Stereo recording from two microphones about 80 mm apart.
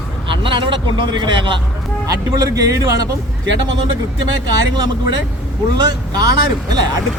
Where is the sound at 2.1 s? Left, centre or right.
Right.